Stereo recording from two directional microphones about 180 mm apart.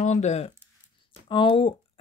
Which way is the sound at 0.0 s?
40° left (ahead or behind).